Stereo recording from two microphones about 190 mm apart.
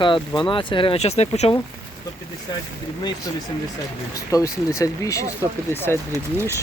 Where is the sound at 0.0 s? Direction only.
25° left (ahead or behind).